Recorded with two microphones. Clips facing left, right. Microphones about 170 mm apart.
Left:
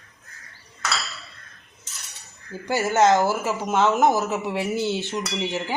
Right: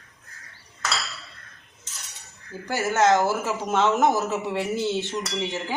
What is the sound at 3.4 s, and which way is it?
Cutlery, centre (ahead or behind).